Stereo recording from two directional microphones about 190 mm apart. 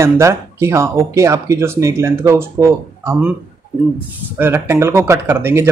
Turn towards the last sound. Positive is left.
turn(degrees=-10)  # may be behind; listen again after turning